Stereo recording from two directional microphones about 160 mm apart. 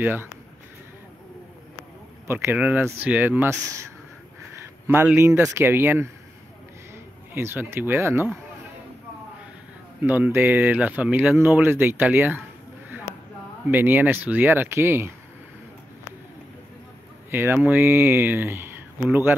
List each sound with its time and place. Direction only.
0.0 s speech: 10° right (ahead or behind)
2.2 s speech: 15° right (ahead or behind)
7.3 s speech: 15° right (ahead or behind)
10.0 s speech: 10° right (ahead or behind)
13.7 s speech: 10° right (ahead or behind)
17.3 s speech: 15° right (ahead or behind)